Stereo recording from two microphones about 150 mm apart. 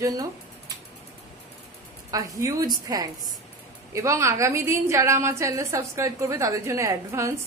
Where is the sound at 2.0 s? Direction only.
25° right (ahead or behind).